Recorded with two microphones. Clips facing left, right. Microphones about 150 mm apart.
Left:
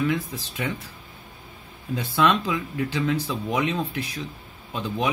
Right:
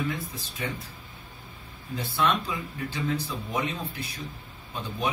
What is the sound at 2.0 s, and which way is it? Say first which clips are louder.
Speech: left 5 dB; 90° left.